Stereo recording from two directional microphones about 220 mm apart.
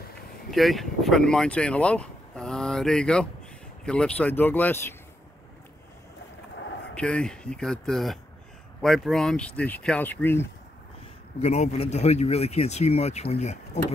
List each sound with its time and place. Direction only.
0.5 s speech: centre (ahead or behind)
7.0 s speech: 5° left (ahead or behind)
11.4 s speech: 30° left (ahead or behind)